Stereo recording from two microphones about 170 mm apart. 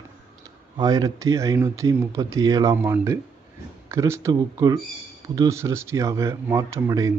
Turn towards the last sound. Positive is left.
turn(degrees=-20)  # may be behind; listen again after turning